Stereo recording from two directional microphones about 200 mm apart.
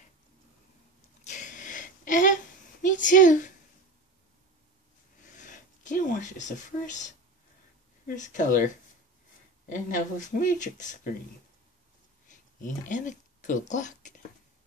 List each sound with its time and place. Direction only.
1.2 s a sound: 40° left (ahead or behind)
2.9 s a woman's voice: 40° left (ahead or behind)
5.3 s speech: 40° left (ahead or behind)
8.2 s speech: 40° left (ahead or behind)
9.7 s speech: 40° left (ahead or behind)
12.3 s speech: 40° left (ahead or behind)